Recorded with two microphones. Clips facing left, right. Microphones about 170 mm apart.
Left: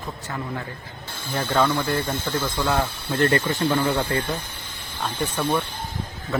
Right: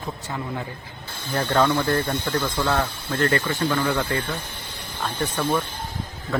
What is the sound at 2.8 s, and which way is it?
Speech, 20° left (ahead or behind).